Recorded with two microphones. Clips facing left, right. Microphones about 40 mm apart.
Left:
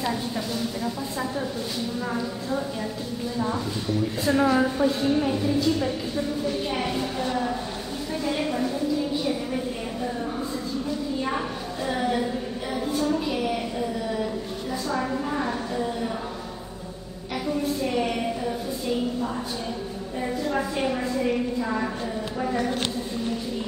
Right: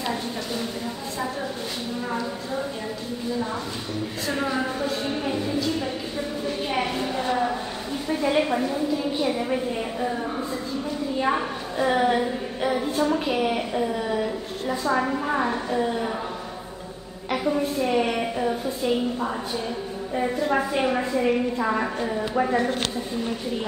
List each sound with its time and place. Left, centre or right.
0.0 s a woman's voice: centre
4.3 s a woman's voice: centre
5.0 s a woman's voice: centre
11.8 s a woman's voice: right
17.3 s a woman's voice: right
20.2 s a woman's voice: right